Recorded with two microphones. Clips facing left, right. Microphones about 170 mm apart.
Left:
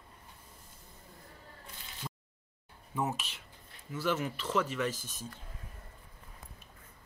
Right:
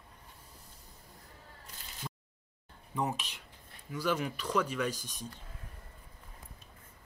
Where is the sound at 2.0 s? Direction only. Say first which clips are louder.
Even; 5° left (ahead or behind).